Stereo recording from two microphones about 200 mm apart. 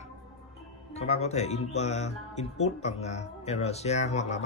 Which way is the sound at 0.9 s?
35° left (ahead or behind).